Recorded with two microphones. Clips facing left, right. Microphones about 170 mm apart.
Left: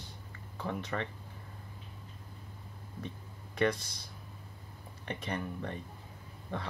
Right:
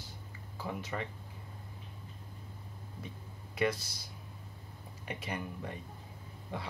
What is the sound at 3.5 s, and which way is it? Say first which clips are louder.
Speech: left 2 dB; 5° right (ahead or behind).